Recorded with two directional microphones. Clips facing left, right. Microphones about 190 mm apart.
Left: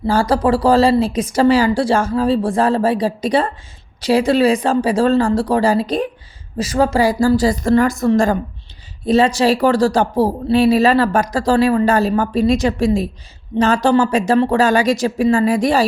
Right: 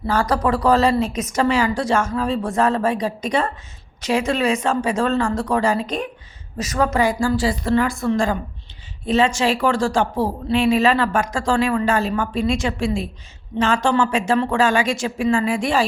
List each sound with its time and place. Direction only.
0.1 s speech: 30° left (ahead or behind)